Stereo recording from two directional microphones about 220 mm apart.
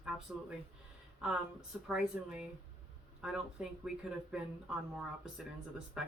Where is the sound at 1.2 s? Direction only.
5° right (ahead or behind).